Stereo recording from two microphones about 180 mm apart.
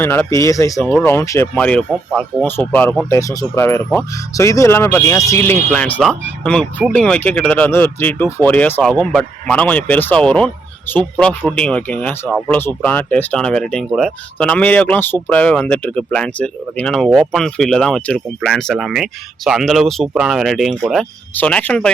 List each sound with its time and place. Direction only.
0.0 s speech: 10° left (ahead or behind)
3.1 s speech: 15° left (ahead or behind)
5.7 s speech: 5° left (ahead or behind)